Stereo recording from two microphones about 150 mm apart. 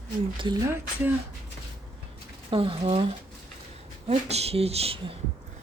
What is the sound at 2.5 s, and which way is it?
Speech, 35° right (ahead or behind).